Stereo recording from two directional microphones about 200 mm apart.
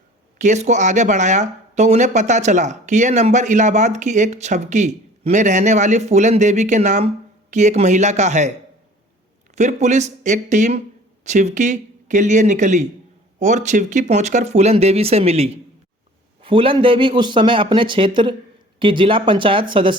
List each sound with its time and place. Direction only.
0.3 s speech: 35° right (ahead or behind)
9.6 s speech: 35° right (ahead or behind)